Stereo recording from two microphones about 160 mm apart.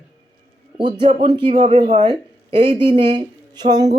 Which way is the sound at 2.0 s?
30° right (ahead or behind).